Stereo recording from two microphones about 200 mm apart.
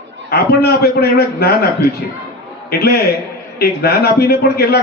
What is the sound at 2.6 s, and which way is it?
A man's voice, 50° left (ahead or behind).